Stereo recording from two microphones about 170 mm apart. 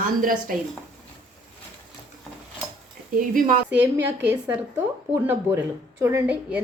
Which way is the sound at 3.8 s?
10° right (ahead or behind).